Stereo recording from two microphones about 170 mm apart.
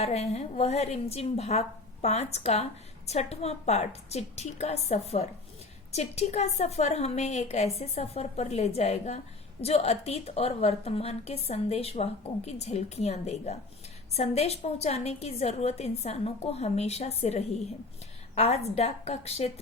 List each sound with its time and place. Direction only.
0.0 s a woman's voice: 35° left (ahead or behind)